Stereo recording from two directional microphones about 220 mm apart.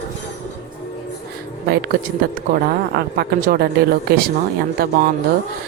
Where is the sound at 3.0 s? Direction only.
45° right (ahead or behind).